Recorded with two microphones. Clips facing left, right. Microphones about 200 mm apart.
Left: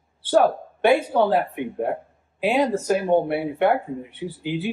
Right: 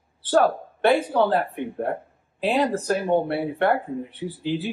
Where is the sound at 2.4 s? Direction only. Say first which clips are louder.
Left 1 dB; centre (ahead or behind).